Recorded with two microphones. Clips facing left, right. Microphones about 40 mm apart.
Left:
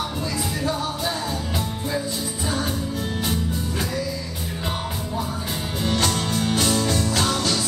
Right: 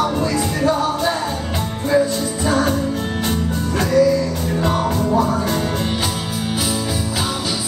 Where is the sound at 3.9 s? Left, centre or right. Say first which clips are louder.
Right 14 dB; right.